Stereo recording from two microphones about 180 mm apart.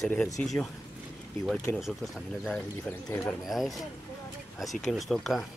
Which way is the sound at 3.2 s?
Centre (ahead or behind).